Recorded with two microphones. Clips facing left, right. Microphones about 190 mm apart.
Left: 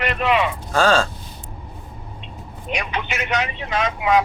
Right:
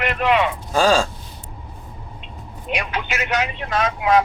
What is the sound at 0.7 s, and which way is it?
Speech, 15° right (ahead or behind).